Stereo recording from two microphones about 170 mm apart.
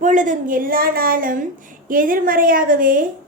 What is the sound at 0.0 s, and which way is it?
A woman's voice, 50° right (ahead or behind).